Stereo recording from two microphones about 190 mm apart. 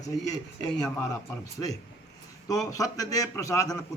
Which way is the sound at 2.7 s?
20° left (ahead or behind).